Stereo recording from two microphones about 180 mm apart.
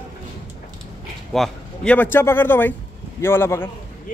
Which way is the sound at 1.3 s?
5° left (ahead or behind).